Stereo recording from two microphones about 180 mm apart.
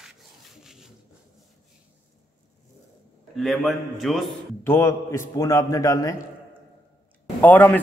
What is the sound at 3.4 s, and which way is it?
Speech, centre (ahead or behind).